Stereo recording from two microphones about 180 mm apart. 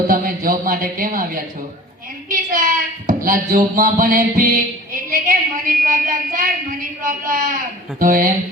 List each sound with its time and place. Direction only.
0.1 s speech: 50° right (ahead or behind)